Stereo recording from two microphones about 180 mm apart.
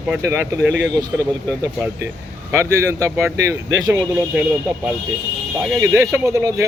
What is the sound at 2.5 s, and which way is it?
Speech, 15° right (ahead or behind).